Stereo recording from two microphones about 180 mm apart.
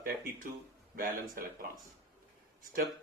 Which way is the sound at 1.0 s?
55° right (ahead or behind).